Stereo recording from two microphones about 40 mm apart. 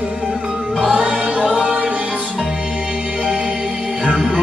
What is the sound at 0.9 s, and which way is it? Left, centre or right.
Choir, right.